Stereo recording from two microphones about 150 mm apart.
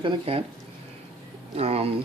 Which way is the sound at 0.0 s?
40° right (ahead or behind).